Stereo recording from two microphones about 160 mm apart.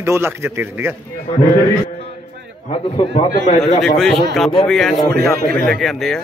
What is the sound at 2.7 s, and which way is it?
Speech, 35° left (ahead or behind).